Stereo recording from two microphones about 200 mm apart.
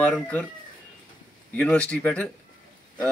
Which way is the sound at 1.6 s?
5° left (ahead or behind).